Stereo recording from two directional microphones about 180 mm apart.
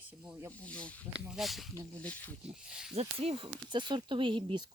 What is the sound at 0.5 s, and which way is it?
Speech, 5° left (ahead or behind).